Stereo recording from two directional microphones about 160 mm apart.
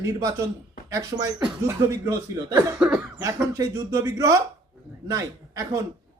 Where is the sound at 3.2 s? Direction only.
15° right (ahead or behind).